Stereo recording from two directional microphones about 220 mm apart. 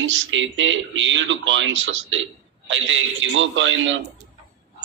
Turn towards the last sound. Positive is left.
turn(degrees=-60)  # may be behind; listen again after turning